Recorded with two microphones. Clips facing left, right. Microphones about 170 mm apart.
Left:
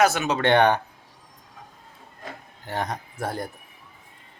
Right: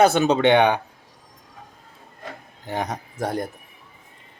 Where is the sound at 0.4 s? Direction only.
15° right (ahead or behind).